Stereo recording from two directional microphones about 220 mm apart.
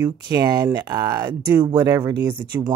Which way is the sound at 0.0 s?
15° right (ahead or behind).